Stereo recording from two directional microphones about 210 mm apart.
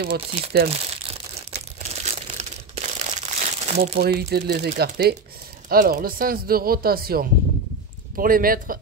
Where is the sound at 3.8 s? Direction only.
45° right (ahead or behind).